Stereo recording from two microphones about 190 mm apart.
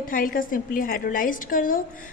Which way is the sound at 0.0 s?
45° left (ahead or behind).